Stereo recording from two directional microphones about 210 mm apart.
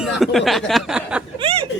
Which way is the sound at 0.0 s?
Centre (ahead or behind).